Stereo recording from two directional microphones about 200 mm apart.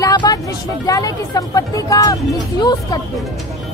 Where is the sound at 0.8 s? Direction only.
15° left (ahead or behind).